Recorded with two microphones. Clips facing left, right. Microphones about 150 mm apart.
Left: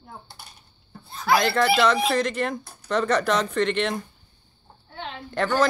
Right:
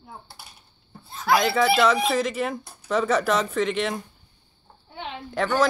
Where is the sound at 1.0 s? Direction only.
Centre (ahead or behind).